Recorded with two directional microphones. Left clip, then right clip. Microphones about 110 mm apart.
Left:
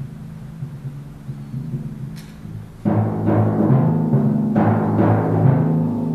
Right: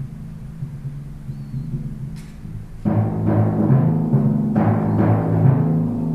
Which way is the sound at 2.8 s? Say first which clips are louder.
Left 2 dB; 10° left (ahead or behind).